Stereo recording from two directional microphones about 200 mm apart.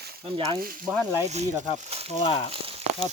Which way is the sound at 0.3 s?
25° right (ahead or behind).